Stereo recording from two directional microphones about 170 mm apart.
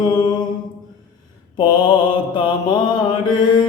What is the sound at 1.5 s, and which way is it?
Mantra, 25° left (ahead or behind).